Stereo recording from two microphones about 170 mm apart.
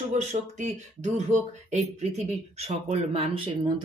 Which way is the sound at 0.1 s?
40° right (ahead or behind).